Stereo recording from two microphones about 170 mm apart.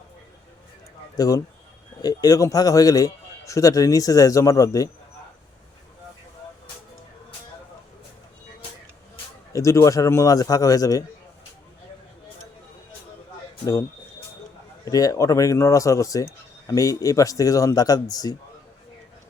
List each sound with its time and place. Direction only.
1.1 s speech: 20° left (ahead or behind)
9.5 s speech: 15° left (ahead or behind)
14.8 s speech: 20° left (ahead or behind)